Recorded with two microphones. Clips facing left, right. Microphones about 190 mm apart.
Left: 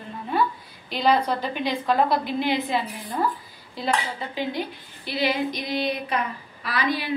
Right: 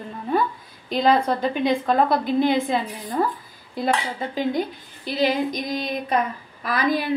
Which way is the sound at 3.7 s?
50° right (ahead or behind).